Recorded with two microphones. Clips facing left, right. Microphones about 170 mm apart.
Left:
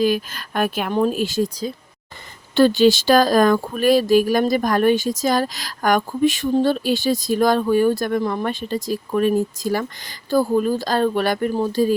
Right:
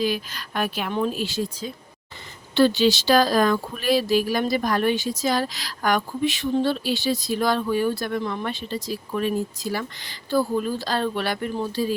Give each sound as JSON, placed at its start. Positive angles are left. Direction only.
{"t": 0.0, "sound": "speech", "side_deg": 45}